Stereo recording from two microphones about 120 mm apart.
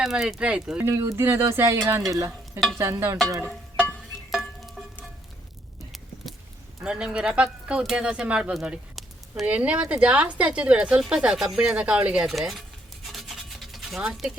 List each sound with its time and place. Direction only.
0.0 s speech: centre (ahead or behind)
0.9 s speech: 20° right (ahead or behind)
4.3 s music: centre (ahead or behind)
6.8 s speech: 5° right (ahead or behind)
13.1 s rub: centre (ahead or behind)